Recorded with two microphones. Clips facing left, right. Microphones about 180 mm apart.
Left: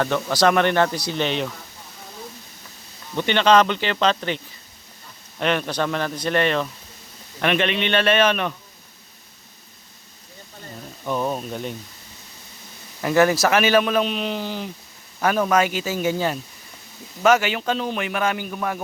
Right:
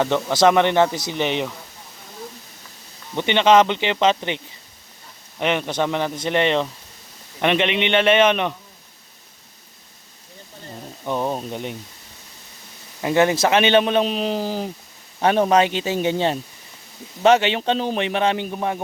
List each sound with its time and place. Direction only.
0.0 s speech: 20° right (ahead or behind)
3.2 s a man's voice: 20° right (ahead or behind)
5.4 s a man's voice: 15° right (ahead or behind)
11.0 s speech: 20° right (ahead or behind)
13.0 s a man's voice: 20° right (ahead or behind)